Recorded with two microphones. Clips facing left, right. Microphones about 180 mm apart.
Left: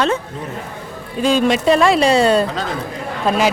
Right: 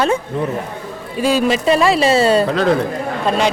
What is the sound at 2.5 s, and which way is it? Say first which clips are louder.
Speech: right 9 dB; 65° right (ahead or behind).